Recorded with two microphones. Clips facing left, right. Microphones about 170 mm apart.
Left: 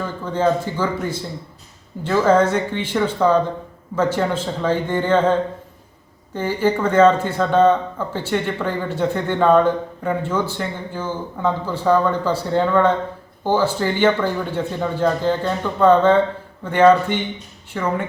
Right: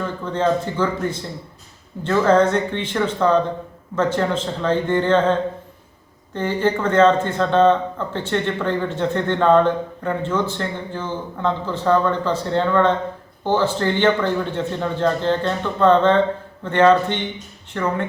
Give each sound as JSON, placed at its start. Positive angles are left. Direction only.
{"t": 0.0, "sound": "a man's voice", "side_deg": 10}
{"t": 6.3, "sound": "a man's voice", "side_deg": 10}